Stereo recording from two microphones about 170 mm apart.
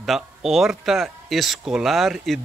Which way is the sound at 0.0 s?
Centre (ahead or behind).